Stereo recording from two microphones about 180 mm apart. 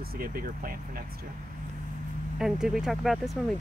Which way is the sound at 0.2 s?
55° right (ahead or behind).